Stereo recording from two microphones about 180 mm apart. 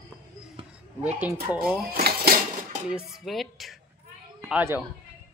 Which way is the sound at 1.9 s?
60° right (ahead or behind).